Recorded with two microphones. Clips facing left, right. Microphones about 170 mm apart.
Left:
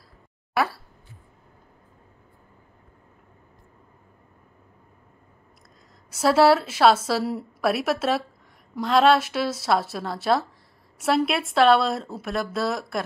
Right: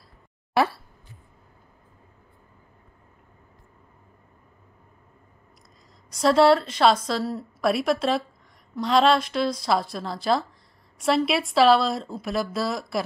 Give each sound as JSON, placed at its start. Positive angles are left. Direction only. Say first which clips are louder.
{"t": 0.6, "sound": "speech", "louder": "right 2 dB", "side_deg": -25}
{"t": 6.0, "sound": "speech", "louder": "even", "side_deg": 5}